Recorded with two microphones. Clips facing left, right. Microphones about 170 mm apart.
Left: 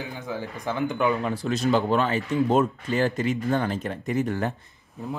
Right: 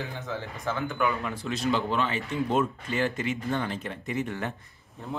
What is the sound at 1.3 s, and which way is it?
Speech, 40° left (ahead or behind).